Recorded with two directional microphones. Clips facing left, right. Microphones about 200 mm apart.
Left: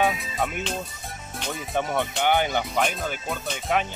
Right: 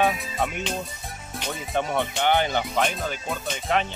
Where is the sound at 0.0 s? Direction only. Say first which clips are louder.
Right 1 dB; centre (ahead or behind).